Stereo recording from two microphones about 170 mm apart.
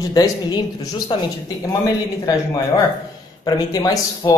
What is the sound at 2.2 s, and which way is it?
Speech, 20° left (ahead or behind).